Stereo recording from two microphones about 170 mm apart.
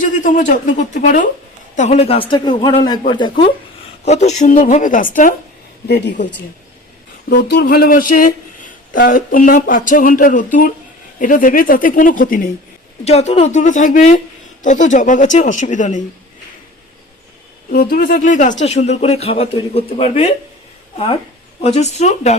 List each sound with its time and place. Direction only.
0.0 s a sound: 50° left (ahead or behind)
0.5 s a man's voice: 50° left (ahead or behind); by 3.5 s 30° left (ahead or behind)
4.0 s speech: 40° left (ahead or behind)
7.3 s speech: 60° left (ahead or behind)
13.1 s speech: 40° left (ahead or behind)
17.7 s speech: 60° left (ahead or behind); by 20.3 s 35° left (ahead or behind)
21.6 s speech: 40° left (ahead or behind)